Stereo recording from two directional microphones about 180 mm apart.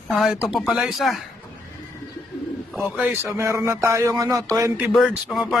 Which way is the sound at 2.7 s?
5° right (ahead or behind).